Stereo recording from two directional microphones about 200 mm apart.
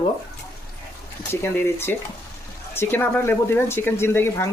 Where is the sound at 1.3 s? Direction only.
10° left (ahead or behind).